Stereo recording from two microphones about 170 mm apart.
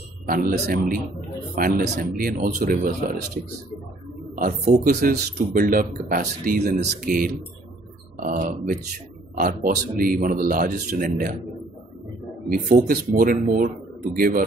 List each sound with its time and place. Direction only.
0.3 s speech: 60° right (ahead or behind)
4.4 s speech: 50° right (ahead or behind)
12.4 s speech: 50° right (ahead or behind)